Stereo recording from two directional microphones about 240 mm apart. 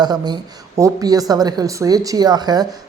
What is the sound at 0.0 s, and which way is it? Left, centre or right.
A man's voice, centre.